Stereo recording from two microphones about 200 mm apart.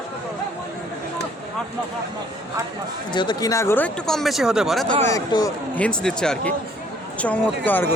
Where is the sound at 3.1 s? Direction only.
20° left (ahead or behind); by 4.9 s centre (ahead or behind).